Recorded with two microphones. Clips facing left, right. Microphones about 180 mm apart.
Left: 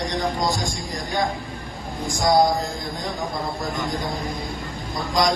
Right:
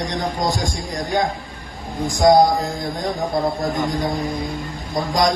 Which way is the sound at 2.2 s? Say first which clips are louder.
Right 6 dB; 45° right (ahead or behind).